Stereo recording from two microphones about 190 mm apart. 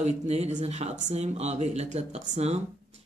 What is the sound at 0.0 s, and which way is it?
Speech, 35° right (ahead or behind).